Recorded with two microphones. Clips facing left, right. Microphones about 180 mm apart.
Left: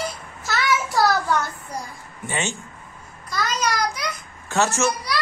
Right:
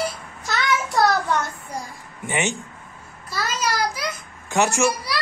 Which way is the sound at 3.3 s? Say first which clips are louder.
Left 1 dB; 5° right (ahead or behind).